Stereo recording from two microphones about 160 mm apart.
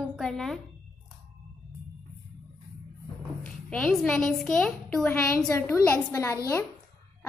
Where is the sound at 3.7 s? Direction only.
5° left (ahead or behind).